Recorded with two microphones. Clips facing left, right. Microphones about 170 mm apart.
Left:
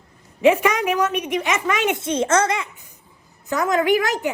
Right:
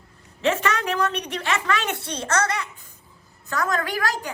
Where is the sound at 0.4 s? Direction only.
15° left (ahead or behind).